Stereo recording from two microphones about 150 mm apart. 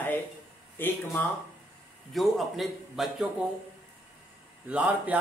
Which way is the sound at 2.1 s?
Centre (ahead or behind).